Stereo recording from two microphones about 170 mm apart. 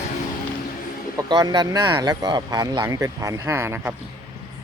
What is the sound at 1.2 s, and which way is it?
Speech, 25° right (ahead or behind).